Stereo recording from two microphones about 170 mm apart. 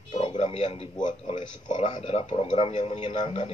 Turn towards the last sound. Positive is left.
turn(degrees=40)  # may be behind; listen again after turning